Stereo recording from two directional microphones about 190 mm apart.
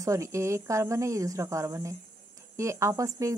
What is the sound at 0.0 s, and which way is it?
Speech, 15° right (ahead or behind).